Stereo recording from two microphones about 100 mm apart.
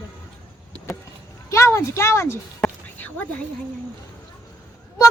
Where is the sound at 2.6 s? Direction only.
15° left (ahead or behind).